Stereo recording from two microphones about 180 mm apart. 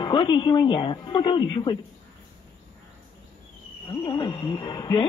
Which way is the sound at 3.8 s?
25° left (ahead or behind).